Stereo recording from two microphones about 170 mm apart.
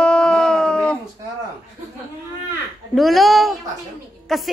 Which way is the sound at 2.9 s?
Centre (ahead or behind).